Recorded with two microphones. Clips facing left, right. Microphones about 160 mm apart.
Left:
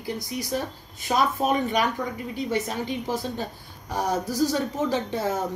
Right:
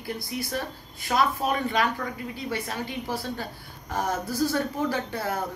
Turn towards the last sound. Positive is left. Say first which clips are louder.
# left 4 dB
turn(degrees=20)  # may be behind; listen again after turning